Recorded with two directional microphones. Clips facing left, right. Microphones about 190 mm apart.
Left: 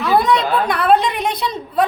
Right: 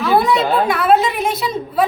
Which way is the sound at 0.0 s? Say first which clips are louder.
Right 1 dB; 5° right (ahead or behind).